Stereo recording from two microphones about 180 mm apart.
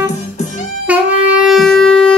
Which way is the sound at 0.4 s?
40° left (ahead or behind).